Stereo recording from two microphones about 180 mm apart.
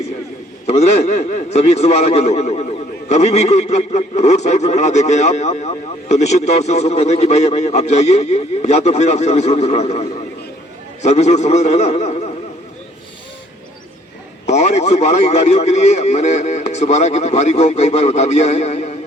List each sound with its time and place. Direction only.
0.7 s a man's voice: 40° left (ahead or behind)
14.4 s a man's voice: 40° left (ahead or behind)